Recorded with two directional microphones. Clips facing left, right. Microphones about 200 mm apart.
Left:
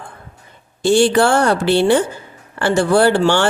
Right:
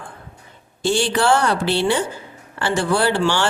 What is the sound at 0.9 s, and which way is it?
Speech, 50° left (ahead or behind).